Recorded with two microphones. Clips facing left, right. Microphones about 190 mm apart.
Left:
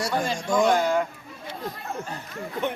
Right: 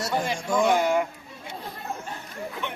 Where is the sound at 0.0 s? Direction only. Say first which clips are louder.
Left 1 dB; 10° right (ahead or behind).